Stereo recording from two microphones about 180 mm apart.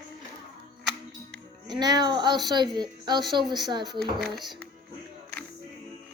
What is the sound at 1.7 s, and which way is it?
Speech, 25° right (ahead or behind).